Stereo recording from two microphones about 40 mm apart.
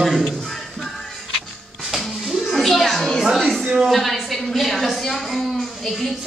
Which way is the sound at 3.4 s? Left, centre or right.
Centre.